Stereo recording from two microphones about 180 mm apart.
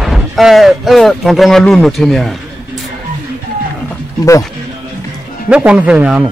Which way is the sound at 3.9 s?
15° left (ahead or behind).